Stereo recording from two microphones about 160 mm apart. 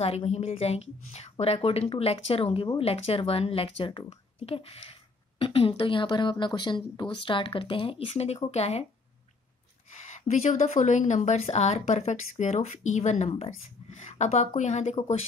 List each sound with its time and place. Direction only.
0.0 s speech: 40° left (ahead or behind)
9.9 s speech: 45° left (ahead or behind)